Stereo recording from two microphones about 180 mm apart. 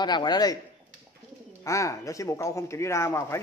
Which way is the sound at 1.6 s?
15° left (ahead or behind).